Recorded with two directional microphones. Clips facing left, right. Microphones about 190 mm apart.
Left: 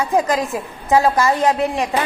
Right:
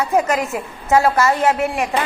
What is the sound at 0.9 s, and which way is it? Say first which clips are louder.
Speech: even; 15° left (ahead or behind).